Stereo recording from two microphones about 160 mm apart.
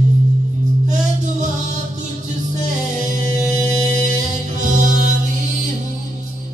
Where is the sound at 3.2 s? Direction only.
50° right (ahead or behind).